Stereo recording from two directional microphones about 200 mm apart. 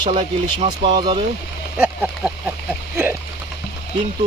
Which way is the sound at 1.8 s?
5° right (ahead or behind).